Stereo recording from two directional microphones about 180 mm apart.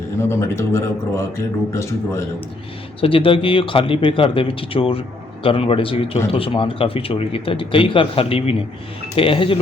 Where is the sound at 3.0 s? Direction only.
30° left (ahead or behind).